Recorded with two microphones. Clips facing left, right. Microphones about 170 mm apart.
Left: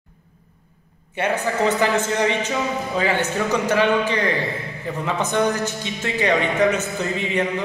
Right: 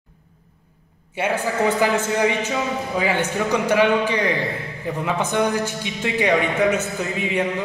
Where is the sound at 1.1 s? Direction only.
10° right (ahead or behind).